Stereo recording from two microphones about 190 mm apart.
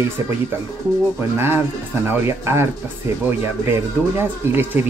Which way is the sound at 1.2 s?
15° right (ahead or behind).